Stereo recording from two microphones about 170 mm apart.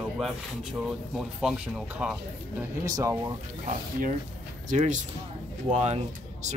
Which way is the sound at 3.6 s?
45° right (ahead or behind).